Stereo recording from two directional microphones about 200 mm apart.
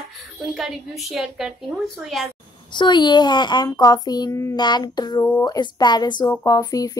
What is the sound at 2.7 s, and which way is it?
Speech, 20° left (ahead or behind).